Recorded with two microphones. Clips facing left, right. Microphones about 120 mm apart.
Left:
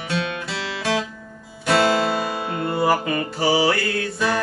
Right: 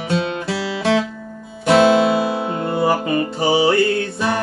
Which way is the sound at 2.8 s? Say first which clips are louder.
Right 3 dB; 25° right (ahead or behind).